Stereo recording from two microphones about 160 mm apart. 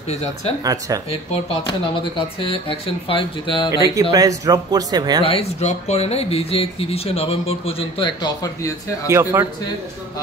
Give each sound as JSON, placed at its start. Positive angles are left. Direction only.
{"t": 0.7, "sound": "speech", "side_deg": -20}
{"t": 1.1, "sound": "speech", "side_deg": 35}
{"t": 3.8, "sound": "speech", "side_deg": -20}
{"t": 5.2, "sound": "speech", "side_deg": 40}
{"t": 9.0, "sound": "speech", "side_deg": -15}